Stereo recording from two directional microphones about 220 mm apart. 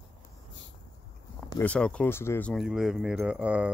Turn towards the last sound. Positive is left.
turn(degrees=-5)  # may be behind; listen again after turning